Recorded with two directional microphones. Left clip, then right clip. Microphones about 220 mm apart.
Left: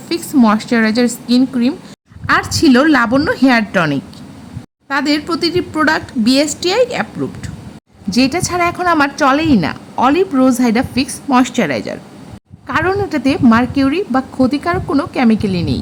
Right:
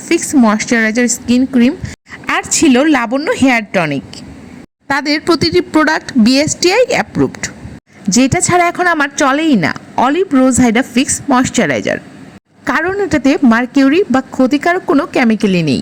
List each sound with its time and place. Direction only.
0.1 s a woman's voice: 20° right (ahead or behind)
2.2 s a woman's voice: 15° right (ahead or behind)